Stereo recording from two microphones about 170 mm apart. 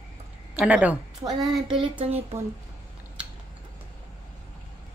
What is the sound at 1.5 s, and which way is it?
Speech, 30° right (ahead or behind).